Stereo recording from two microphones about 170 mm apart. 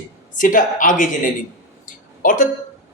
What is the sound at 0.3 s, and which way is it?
Speech, 50° left (ahead or behind).